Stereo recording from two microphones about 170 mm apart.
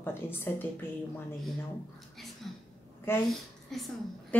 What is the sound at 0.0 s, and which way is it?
Speech, 10° left (ahead or behind).